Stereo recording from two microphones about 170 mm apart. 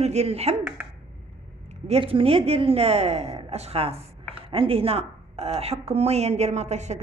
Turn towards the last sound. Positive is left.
turn(degrees=-40)  # may be behind; listen again after turning